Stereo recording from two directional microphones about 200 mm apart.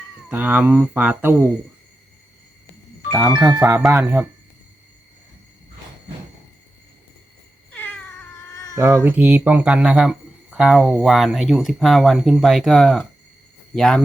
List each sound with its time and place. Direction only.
0.3 s speech: 10° right (ahead or behind)
3.3 s speech: 20° right (ahead or behind)
3.6 s speech: 5° right (ahead or behind)
7.7 s cat: 10° left (ahead or behind)
8.7 s speech: 15° right (ahead or behind); by 14.0 s 5° left (ahead or behind)